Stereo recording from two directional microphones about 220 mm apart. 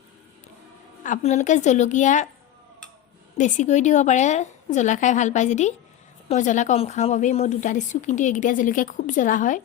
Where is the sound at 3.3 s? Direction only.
35° left (ahead or behind).